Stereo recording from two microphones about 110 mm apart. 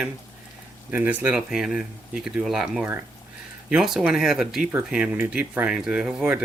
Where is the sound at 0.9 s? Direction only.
15° right (ahead or behind).